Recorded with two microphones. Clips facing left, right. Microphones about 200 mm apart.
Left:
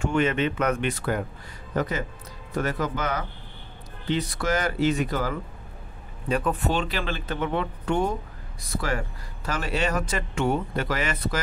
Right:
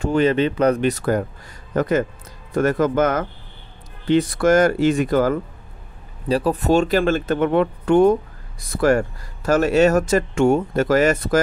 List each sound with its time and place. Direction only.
0.0 s speech: 35° right (ahead or behind)
6.2 s speech: 35° right (ahead or behind)